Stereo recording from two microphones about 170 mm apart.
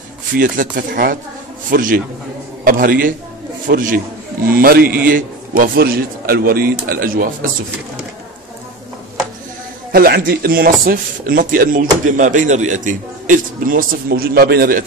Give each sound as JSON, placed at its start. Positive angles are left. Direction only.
{"t": 0.3, "sound": "a man's voice", "side_deg": -55}
{"t": 9.9, "sound": "speech", "side_deg": -60}